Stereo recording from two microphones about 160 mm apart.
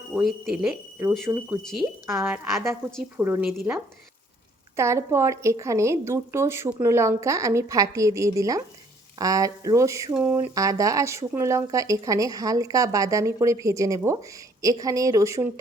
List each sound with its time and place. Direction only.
0.1 s speech: 5° right (ahead or behind)
0.9 s a woman's voice: 15° right (ahead or behind)
4.8 s a woman's voice: 15° right (ahead or behind)